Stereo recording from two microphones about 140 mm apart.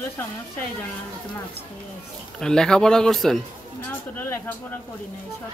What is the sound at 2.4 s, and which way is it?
Speech, 5° left (ahead or behind).